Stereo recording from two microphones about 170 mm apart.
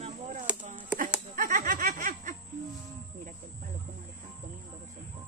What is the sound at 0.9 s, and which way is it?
Goat, 5° right (ahead or behind).